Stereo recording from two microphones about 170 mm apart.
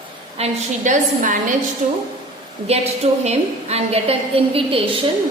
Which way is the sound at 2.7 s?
35° right (ahead or behind).